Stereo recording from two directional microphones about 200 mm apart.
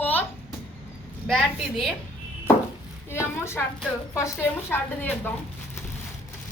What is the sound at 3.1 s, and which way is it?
Speech, 15° left (ahead or behind).